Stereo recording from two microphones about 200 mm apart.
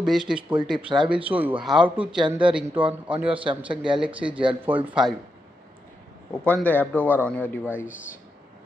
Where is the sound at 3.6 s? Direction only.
5° right (ahead or behind).